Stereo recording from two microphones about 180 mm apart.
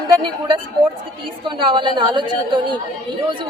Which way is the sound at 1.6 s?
25° right (ahead or behind).